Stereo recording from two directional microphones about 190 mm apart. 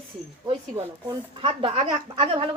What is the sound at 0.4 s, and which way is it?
Speech, 25° right (ahead or behind).